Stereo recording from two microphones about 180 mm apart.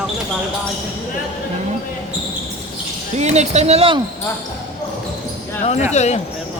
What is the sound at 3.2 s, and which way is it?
Speech, 40° right (ahead or behind).